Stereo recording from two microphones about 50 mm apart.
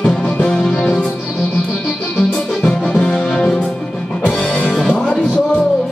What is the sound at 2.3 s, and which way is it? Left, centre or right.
Music, centre.